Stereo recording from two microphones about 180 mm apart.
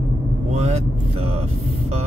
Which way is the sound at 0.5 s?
40° right (ahead or behind).